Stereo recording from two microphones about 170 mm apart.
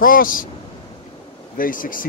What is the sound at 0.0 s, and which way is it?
Speech, 55° left (ahead or behind).